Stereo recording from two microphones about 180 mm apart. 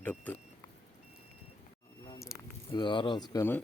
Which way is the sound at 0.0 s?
10° left (ahead or behind).